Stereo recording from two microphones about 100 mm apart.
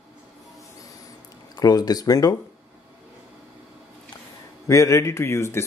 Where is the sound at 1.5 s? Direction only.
40° left (ahead or behind).